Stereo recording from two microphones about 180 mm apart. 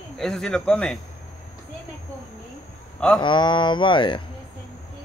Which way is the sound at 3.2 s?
25° left (ahead or behind).